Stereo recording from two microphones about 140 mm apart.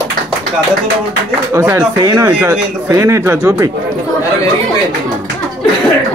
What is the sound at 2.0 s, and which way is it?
Speech, 25° right (ahead or behind).